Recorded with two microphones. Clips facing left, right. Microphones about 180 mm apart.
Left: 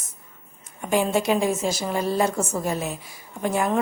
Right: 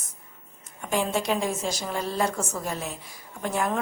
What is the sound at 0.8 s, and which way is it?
A woman's voice, 10° left (ahead or behind).